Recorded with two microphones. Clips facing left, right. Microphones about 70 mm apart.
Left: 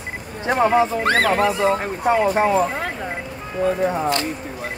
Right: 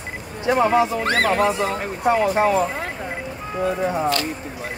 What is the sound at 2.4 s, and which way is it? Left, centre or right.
Speech, left.